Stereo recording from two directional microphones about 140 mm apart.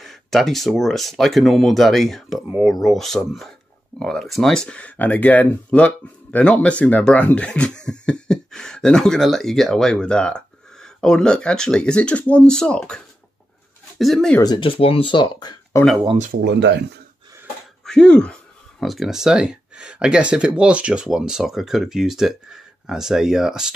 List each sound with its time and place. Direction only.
0.0 s speech: centre (ahead or behind)
14.4 s speech: 35° left (ahead or behind)
15.7 s speech: 20° left (ahead or behind)
17.8 s speech: 5° left (ahead or behind)